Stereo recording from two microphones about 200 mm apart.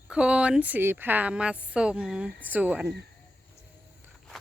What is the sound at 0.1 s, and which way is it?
A woman's voice, 5° right (ahead or behind).